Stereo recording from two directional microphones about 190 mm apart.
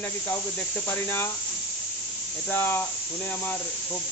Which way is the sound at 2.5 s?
10° left (ahead or behind).